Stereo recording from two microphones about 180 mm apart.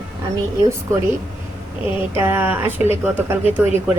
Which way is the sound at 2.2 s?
10° right (ahead or behind).